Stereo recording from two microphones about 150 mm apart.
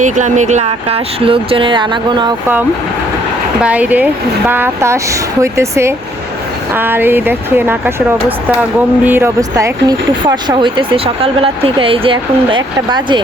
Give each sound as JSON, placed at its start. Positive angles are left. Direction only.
{"t": 0.0, "sound": "speech", "side_deg": -55}
{"t": 3.6, "sound": "speech", "side_deg": -10}
{"t": 9.0, "sound": "speech", "side_deg": -15}